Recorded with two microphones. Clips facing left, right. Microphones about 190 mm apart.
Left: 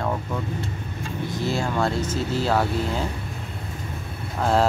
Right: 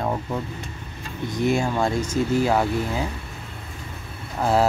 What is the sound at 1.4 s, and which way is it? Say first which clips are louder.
Speech: right 3 dB; 15° right (ahead or behind).